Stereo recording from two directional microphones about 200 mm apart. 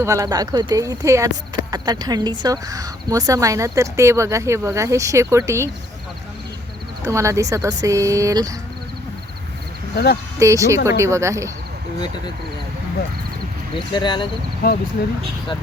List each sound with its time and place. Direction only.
0.0 s a woman's voice: 15° right (ahead or behind)
7.0 s a woman's voice: 15° right (ahead or behind)
9.9 s speech: 55° left (ahead or behind)
10.4 s a woman's voice: 15° right (ahead or behind)
13.7 s speech: 25° left (ahead or behind)
14.6 s speech: 50° left (ahead or behind)